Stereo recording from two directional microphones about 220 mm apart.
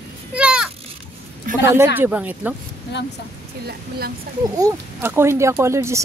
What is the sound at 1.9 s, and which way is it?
Speech, 5° right (ahead or behind).